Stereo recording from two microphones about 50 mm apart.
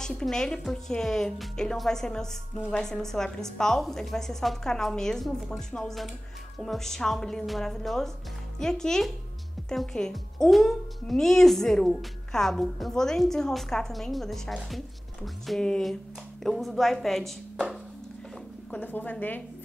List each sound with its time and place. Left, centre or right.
0.0 s a woman's voice: centre
9.6 s music: centre
9.9 s a woman's voice: centre
18.7 s a woman's voice: left